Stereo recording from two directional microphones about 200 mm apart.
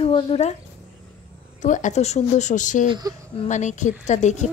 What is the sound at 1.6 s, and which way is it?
Speech, 40° left (ahead or behind).